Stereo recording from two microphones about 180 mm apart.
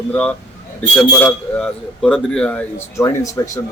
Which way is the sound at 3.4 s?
20° left (ahead or behind).